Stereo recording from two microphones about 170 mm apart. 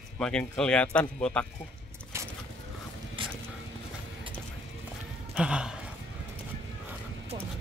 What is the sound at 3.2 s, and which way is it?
Mechanisms, 30° right (ahead or behind).